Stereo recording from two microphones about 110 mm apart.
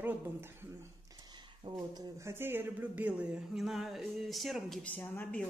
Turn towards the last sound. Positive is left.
turn(degrees=15)  # may be behind; listen again after turning